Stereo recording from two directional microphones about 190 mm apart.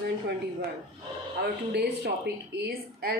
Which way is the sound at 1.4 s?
55° right (ahead or behind).